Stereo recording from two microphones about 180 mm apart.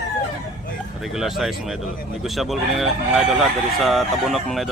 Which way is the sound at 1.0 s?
Centre (ahead or behind).